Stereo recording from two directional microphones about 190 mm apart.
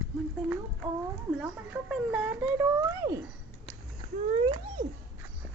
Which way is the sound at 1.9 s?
5° right (ahead or behind).